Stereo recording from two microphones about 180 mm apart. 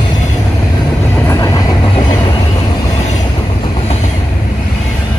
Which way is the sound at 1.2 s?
20° left (ahead or behind).